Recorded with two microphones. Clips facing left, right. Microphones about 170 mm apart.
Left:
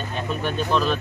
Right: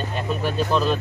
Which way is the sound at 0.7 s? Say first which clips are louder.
Even; 5° right (ahead or behind).